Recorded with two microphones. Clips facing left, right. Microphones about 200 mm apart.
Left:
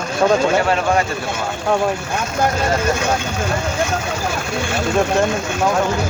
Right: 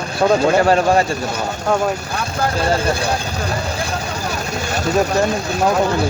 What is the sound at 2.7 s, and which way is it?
Speech, 35° right (ahead or behind).